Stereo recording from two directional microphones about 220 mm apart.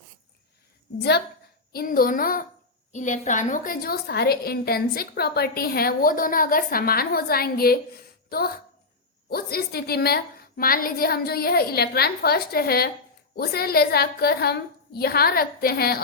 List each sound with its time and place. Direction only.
1.7 s a child's voice: 40° left (ahead or behind)